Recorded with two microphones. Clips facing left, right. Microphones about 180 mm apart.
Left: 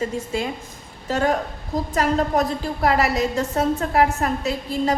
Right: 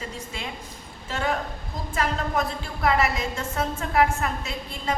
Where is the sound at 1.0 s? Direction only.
40° left (ahead or behind).